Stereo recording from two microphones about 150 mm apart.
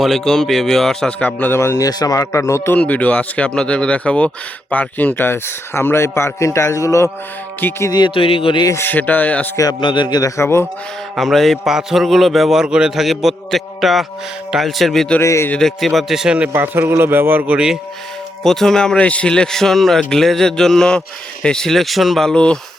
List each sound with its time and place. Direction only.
0.0 s speech: centre (ahead or behind); by 7.9 s 20° left (ahead or behind)
7.9 s speech: 35° left (ahead or behind)
8.6 s speech: 15° left (ahead or behind)
9.6 s a man's voice: 30° left (ahead or behind)
11.2 s a man's voice: centre (ahead or behind)
15.2 s a man's voice: 20° left (ahead or behind)
15.5 s speech: centre (ahead or behind)
18.4 s a man's voice: 5° left (ahead or behind)